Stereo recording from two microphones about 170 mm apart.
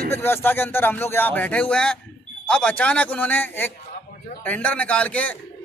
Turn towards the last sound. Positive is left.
turn(degrees=10)  # may be behind; listen again after turning